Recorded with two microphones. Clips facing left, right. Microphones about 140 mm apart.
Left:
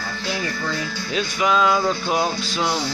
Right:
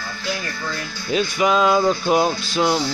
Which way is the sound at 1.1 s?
5° right (ahead or behind).